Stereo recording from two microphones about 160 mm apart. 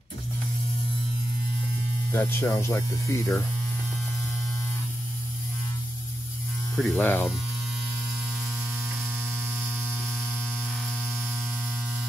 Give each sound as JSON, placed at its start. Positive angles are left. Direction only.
{"t": 2.1, "sound": "speech", "side_deg": 15}
{"t": 6.7, "sound": "speech", "side_deg": 10}
{"t": 9.6, "sound": "a sound", "side_deg": -10}